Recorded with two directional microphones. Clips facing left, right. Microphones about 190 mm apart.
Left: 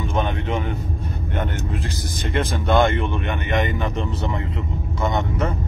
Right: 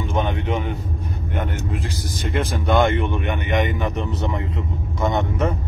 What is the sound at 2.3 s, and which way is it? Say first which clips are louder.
Speech: even; 10° right (ahead or behind).